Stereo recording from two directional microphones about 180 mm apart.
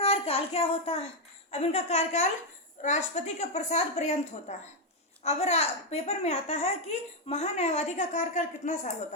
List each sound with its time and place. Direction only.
0.0 s a woman's voice: 35° left (ahead or behind)